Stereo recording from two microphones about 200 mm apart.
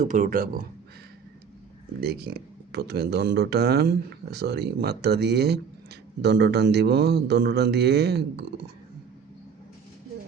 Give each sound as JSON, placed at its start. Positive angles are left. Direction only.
{"t": 0.0, "sound": "speech", "side_deg": -40}
{"t": 2.0, "sound": "speech", "side_deg": -55}